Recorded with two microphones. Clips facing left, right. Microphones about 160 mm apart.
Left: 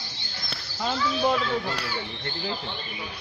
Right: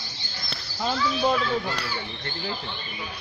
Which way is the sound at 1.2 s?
Centre (ahead or behind).